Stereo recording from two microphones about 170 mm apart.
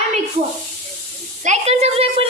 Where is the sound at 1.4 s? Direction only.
40° right (ahead or behind).